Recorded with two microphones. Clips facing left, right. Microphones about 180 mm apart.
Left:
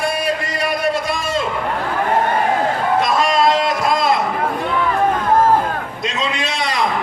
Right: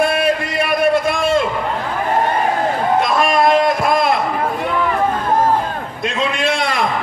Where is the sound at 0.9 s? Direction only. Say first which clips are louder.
Right 5 dB; 55° right (ahead or behind).